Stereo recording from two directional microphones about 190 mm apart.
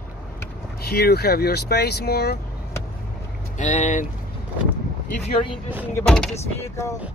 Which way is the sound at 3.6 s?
40° left (ahead or behind).